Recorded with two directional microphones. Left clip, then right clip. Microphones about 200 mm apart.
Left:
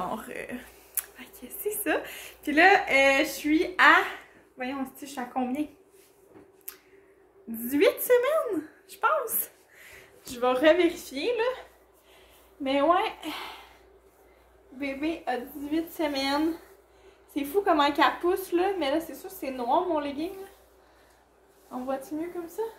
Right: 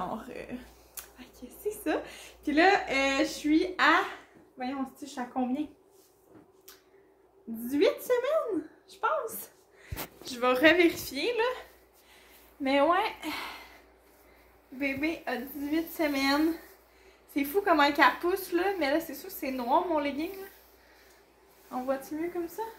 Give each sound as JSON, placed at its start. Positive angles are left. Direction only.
{"t": 0.1, "sound": "a woman's voice", "side_deg": 10}
{"t": 7.6, "sound": "a woman's voice", "side_deg": 10}
{"t": 12.6, "sound": "a woman's voice", "side_deg": -20}
{"t": 14.8, "sound": "a woman's voice", "side_deg": -15}